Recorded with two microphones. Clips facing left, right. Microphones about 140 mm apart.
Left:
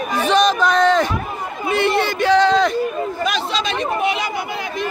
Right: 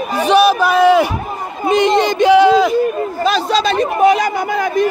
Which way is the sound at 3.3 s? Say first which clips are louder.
Right 7 dB; 35° right (ahead or behind).